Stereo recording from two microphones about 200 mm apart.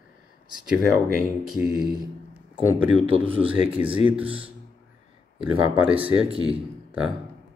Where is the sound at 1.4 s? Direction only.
Centre (ahead or behind).